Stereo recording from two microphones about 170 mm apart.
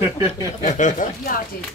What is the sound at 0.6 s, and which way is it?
Speech, 45° left (ahead or behind).